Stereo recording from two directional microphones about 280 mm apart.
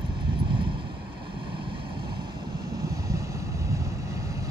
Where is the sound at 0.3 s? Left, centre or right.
Centre.